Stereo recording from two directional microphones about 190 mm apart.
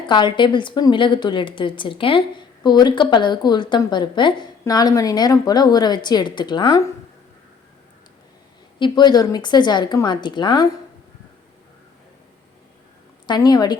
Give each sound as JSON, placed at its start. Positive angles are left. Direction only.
{"t": 0.1, "sound": "a woman's voice", "side_deg": 25}
{"t": 8.8, "sound": "a woman's voice", "side_deg": 20}
{"t": 13.2, "sound": "a woman's voice", "side_deg": 20}